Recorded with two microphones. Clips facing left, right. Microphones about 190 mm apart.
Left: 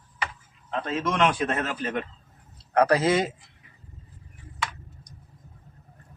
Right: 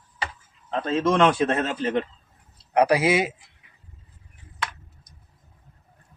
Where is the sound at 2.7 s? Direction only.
10° right (ahead or behind).